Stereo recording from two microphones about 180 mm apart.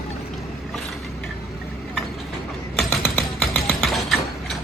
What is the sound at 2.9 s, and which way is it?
Mechanisms, centre (ahead or behind).